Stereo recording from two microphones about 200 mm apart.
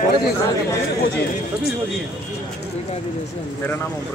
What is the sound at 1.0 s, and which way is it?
Speech, 50° left (ahead or behind).